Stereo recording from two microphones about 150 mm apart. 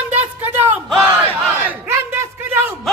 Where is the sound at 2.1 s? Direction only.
15° right (ahead or behind).